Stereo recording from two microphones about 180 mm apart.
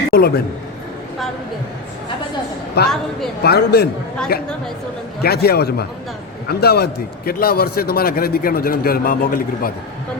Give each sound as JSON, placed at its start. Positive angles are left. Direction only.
{"t": 0.1, "sound": "a man's voice", "side_deg": 60}
{"t": 2.8, "sound": "a man's voice", "side_deg": 65}